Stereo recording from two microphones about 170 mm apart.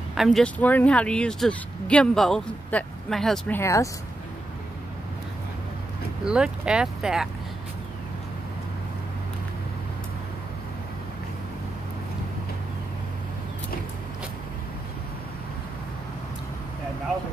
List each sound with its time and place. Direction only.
0.1 s speech: centre (ahead or behind)
3.5 s speech: 15° left (ahead or behind)
6.2 s speech: 5° right (ahead or behind)